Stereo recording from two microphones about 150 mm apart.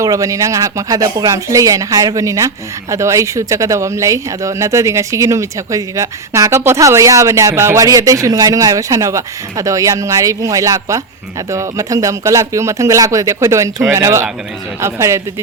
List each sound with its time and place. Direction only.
0.0 s speech: 20° right (ahead or behind)